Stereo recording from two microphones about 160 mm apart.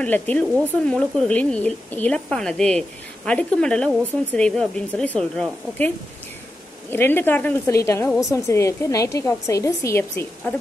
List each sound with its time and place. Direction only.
0.0 s a woman's voice: 10° left (ahead or behind)